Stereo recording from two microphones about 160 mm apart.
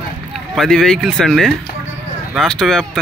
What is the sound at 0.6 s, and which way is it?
Speech, 5° left (ahead or behind).